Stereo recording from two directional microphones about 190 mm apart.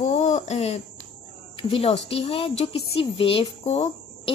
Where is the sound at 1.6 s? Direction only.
30° left (ahead or behind).